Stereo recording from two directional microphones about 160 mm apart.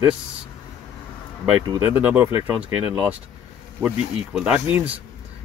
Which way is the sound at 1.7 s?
10° right (ahead or behind).